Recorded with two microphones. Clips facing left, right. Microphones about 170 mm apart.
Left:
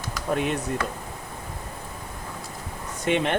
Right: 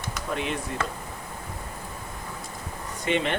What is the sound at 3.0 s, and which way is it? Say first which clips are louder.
Speech: left 2 dB; 50° left (ahead or behind).